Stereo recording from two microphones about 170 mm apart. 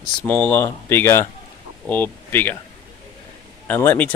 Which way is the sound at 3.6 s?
10° left (ahead or behind).